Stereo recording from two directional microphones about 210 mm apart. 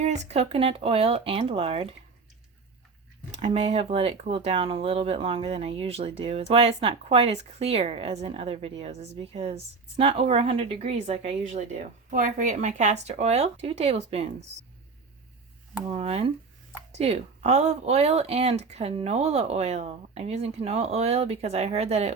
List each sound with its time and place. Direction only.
0.0 s speech: 30° right (ahead or behind)
3.3 s speech: 30° right (ahead or behind)
15.9 s speech: 30° right (ahead or behind)